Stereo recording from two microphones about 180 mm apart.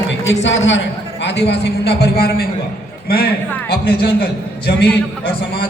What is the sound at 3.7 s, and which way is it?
A man's voice, 65° left (ahead or behind).